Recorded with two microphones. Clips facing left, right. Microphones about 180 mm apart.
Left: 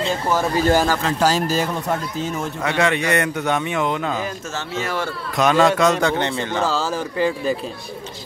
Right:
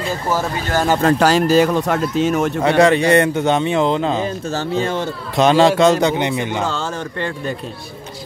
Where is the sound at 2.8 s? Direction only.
35° right (ahead or behind); by 6.6 s 15° right (ahead or behind).